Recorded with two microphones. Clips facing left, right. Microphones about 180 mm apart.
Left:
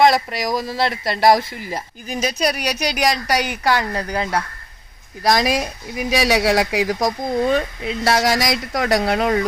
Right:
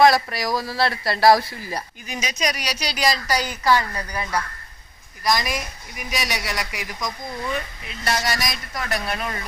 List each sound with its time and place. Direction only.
0.0 s speech: 20° left (ahead or behind)
2.0 s speech: 55° left (ahead or behind); by 9.5 s 90° left